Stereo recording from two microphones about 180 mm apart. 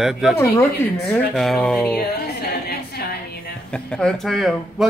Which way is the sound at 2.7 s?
60° left (ahead or behind).